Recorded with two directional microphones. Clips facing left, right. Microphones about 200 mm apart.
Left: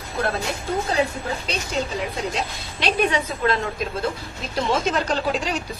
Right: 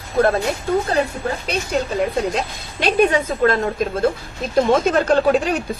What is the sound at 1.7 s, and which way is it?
A woman's voice, 55° right (ahead or behind).